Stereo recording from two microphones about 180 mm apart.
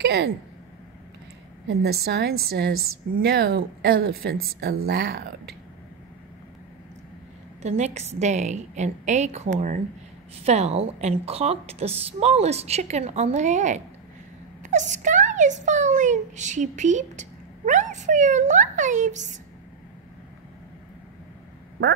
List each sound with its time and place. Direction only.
0.0 s speech: 70° right (ahead or behind)
1.7 s a woman's voice: 65° right (ahead or behind)
7.6 s a woman's voice: 40° right (ahead or behind)